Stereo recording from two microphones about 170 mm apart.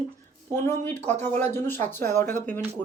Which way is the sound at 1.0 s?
40° right (ahead or behind).